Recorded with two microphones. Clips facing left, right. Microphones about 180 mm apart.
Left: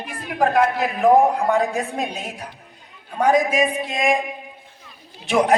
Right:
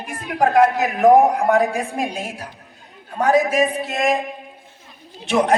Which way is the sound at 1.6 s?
10° right (ahead or behind).